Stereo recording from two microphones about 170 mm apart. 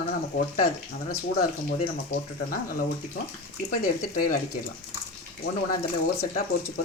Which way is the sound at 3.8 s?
55° left (ahead or behind).